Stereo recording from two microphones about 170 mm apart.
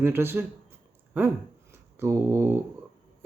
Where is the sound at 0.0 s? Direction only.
15° right (ahead or behind).